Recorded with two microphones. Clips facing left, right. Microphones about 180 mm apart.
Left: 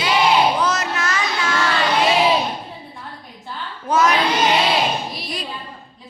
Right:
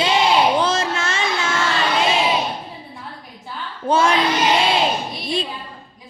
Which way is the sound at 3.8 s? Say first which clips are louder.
Even; 30° right (ahead or behind).